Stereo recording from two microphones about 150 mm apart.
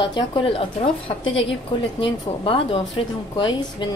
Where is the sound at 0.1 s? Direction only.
35° left (ahead or behind).